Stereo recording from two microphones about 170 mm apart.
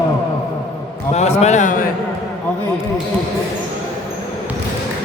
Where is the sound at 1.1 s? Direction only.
40° left (ahead or behind).